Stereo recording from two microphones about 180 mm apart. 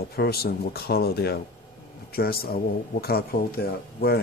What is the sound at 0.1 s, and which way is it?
Speech, 60° left (ahead or behind).